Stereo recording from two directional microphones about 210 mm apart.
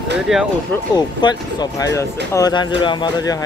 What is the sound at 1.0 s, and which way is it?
Speech, 20° left (ahead or behind).